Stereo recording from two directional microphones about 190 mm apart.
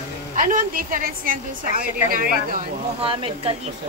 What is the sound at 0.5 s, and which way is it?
A woman's voice, 45° right (ahead or behind).